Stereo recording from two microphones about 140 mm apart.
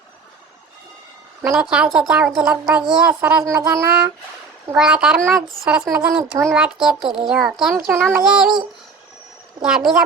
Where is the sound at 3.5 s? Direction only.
20° right (ahead or behind).